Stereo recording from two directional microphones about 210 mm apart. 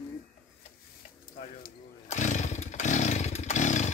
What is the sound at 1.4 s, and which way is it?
Chainsaw, 35° left (ahead or behind).